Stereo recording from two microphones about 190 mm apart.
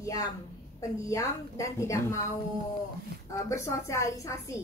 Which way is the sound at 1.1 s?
15° left (ahead or behind).